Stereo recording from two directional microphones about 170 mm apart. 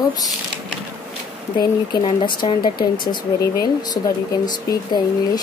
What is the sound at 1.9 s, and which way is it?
Speech, 25° left (ahead or behind).